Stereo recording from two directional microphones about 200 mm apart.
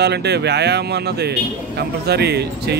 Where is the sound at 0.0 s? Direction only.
55° right (ahead or behind).